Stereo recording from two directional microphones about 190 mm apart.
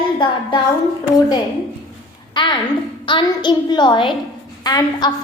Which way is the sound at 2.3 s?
25° left (ahead or behind).